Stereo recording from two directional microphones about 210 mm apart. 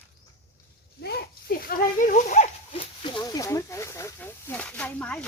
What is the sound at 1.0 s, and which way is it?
Speech, 50° left (ahead or behind).